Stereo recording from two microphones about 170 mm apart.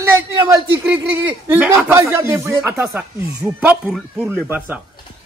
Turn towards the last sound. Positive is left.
turn(degrees=-10)  # may be behind; listen again after turning